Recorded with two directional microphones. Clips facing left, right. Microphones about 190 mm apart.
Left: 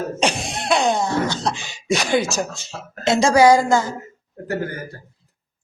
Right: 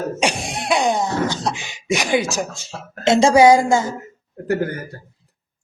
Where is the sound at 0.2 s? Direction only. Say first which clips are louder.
Even; 10° right (ahead or behind).